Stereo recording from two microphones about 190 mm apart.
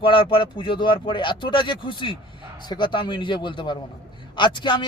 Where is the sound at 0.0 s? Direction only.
25° left (ahead or behind).